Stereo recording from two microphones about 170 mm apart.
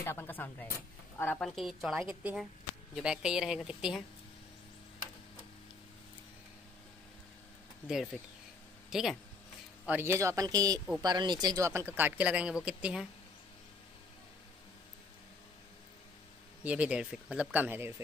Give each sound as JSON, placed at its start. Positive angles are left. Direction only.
{"t": 0.0, "sound": "speech", "side_deg": 10}
{"t": 7.9, "sound": "speech", "side_deg": 0}
{"t": 9.8, "sound": "speech", "side_deg": -15}
{"t": 16.6, "sound": "speech", "side_deg": -5}